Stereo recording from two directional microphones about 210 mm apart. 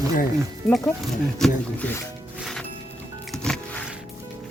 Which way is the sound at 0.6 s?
5° left (ahead or behind).